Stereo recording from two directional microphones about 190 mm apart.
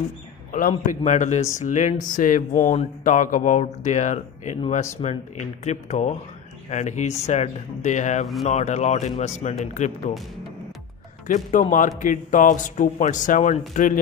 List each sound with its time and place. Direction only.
0.5 s speech: 45° left (ahead or behind)
11.2 s speech: 40° left (ahead or behind)